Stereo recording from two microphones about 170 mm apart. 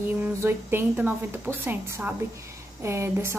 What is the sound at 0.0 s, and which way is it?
A woman's voice, 15° right (ahead or behind).